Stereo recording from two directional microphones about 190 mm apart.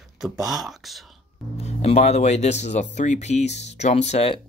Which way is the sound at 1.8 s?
35° left (ahead or behind).